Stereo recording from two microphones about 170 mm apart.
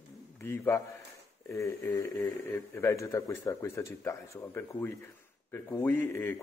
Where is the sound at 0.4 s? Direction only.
15° left (ahead or behind).